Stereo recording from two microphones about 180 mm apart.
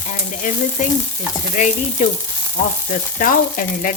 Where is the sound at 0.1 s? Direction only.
45° left (ahead or behind).